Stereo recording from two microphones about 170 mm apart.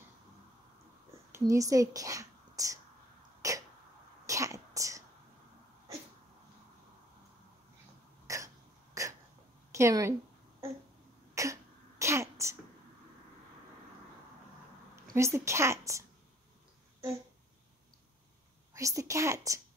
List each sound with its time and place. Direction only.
1.3 s speech: 20° right (ahead or behind)
3.4 s a sound: 20° right (ahead or behind)
4.3 s sneeze: 20° right (ahead or behind)
8.3 s throat clearing: 20° right (ahead or behind)
9.0 s hiccup: 20° right (ahead or behind)
9.7 s a woman's voice: 15° right (ahead or behind)
11.4 s cough: 20° right (ahead or behind)
12.0 s sneeze: 15° right (ahead or behind)
15.1 s a woman's voice: 15° right (ahead or behind)
18.7 s a woman's voice: 20° right (ahead or behind)